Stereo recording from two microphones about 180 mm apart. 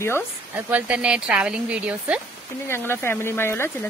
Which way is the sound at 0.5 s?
10° right (ahead or behind).